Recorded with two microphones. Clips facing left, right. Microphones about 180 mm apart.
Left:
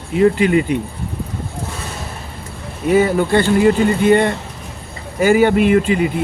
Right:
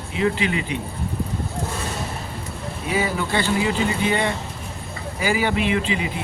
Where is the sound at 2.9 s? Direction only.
50° left (ahead or behind).